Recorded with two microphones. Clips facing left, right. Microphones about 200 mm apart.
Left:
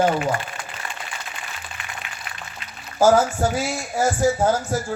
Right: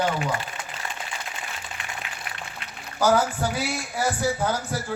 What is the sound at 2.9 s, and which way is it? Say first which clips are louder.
Speech: left 5 dB; 45° left (ahead or behind).